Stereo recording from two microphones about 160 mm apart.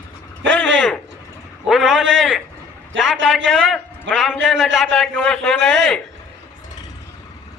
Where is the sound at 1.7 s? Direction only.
Centre (ahead or behind).